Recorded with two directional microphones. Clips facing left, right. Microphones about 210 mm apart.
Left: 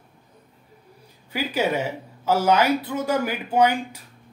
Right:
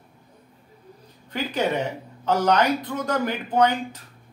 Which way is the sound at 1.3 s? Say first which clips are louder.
Left 1 dB; 5° left (ahead or behind).